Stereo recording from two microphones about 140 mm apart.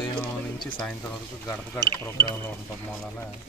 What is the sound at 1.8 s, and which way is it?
Speech, 30° right (ahead or behind).